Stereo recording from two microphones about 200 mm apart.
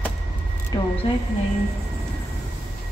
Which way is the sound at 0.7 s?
20° left (ahead or behind).